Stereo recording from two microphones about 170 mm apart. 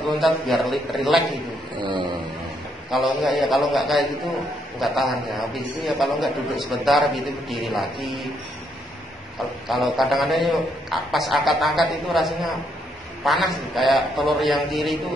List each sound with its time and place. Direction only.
0.1 s a man's voice: centre (ahead or behind)
1.8 s a sound: 25° right (ahead or behind)
2.9 s a man's voice: centre (ahead or behind)
9.7 s a man's voice: centre (ahead or behind)